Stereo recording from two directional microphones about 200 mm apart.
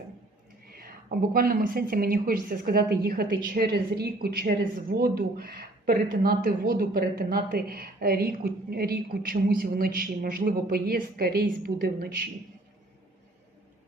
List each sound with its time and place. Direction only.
0.7 s speech: 45° right (ahead or behind)